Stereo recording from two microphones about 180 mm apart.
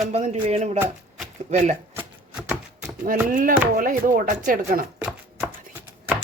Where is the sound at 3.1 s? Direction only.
50° right (ahead or behind).